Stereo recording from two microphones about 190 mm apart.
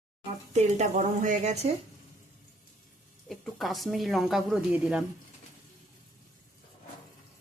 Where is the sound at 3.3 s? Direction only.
Centre (ahead or behind).